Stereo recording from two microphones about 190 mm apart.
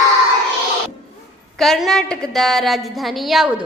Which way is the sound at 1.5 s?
Centre (ahead or behind).